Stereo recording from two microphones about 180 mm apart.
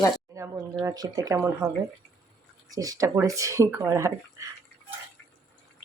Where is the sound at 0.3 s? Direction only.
20° right (ahead or behind).